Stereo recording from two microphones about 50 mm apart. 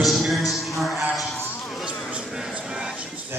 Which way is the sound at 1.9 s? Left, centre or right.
Centre.